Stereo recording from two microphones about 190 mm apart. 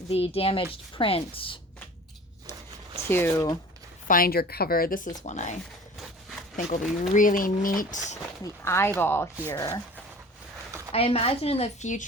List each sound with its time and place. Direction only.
0.1 s a woman's voice: 30° left (ahead or behind)
3.0 s speech: 15° left (ahead or behind)
4.1 s speech: 50° left (ahead or behind)
5.1 s a woman's voice: 40° left (ahead or behind)
7.1 s speech: 45° left (ahead or behind)
8.6 s speech: 15° left (ahead or behind)
10.9 s a woman's voice: 30° left (ahead or behind)